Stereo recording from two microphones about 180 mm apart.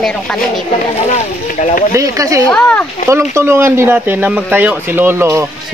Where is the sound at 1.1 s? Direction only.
40° left (ahead or behind).